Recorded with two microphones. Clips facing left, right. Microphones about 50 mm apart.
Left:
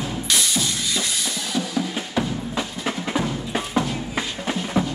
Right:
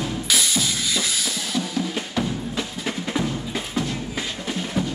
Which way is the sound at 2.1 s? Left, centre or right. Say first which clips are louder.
Left 2 dB; centre.